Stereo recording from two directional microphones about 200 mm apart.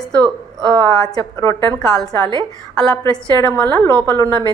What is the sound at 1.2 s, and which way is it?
Speech, 15° left (ahead or behind).